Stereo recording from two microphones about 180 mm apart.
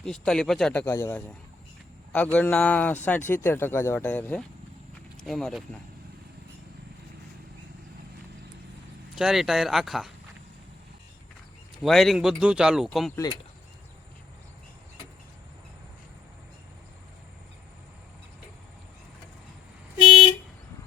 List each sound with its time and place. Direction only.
0.0 s a man's voice: 5° left (ahead or behind)
9.1 s speech: centre (ahead or behind)
11.8 s speech: centre (ahead or behind)